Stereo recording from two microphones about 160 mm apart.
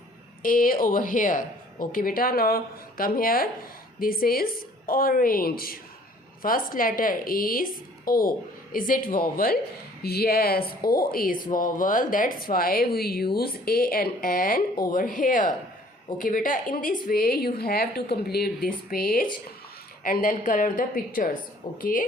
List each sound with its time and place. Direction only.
0.4 s a woman's voice: 60° left (ahead or behind)
10.0 s a woman's voice: 75° left (ahead or behind); by 22.0 s 60° left (ahead or behind)